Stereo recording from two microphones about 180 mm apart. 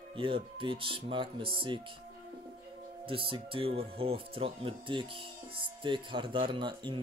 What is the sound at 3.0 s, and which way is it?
Speech, 30° right (ahead or behind).